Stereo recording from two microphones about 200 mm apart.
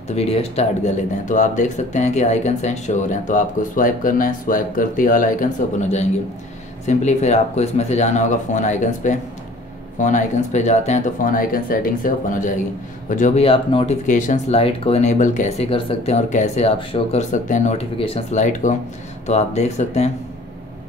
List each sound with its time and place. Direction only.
0.1 s speech: 30° left (ahead or behind)